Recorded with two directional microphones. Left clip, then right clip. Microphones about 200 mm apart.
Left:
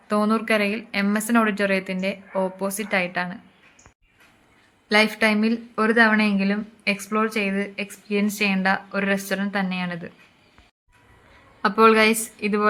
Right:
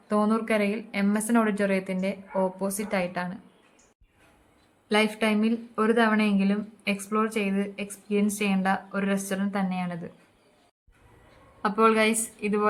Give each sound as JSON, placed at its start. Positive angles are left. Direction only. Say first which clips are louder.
{"t": 0.1, "sound": "speech", "louder": "left 4 dB", "side_deg": 0}
{"t": 4.9, "sound": "speech", "louder": "left 6 dB", "side_deg": 5}
{"t": 11.6, "sound": "a woman's voice", "louder": "left 6 dB", "side_deg": 15}